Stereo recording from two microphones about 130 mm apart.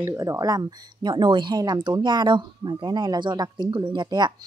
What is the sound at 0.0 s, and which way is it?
A woman's voice, 20° right (ahead or behind).